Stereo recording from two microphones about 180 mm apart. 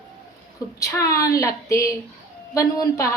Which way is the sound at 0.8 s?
15° left (ahead or behind).